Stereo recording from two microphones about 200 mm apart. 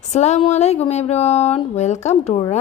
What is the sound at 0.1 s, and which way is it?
Speech, 35° left (ahead or behind).